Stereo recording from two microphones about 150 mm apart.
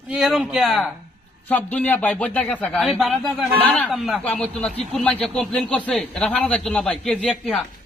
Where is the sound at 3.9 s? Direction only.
Centre (ahead or behind).